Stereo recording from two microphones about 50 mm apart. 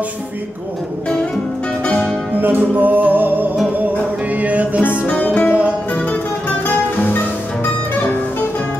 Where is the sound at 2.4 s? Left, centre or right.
Right.